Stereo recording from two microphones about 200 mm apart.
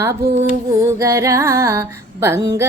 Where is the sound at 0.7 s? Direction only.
15° right (ahead or behind).